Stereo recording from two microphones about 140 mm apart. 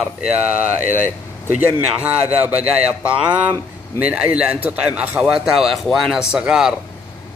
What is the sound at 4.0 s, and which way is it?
A man's voice, 10° right (ahead or behind).